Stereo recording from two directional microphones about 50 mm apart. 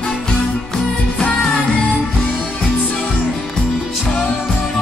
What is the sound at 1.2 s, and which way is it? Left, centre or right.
Music, centre.